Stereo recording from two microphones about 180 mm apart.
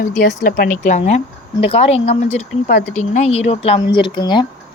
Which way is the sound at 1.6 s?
30° left (ahead or behind).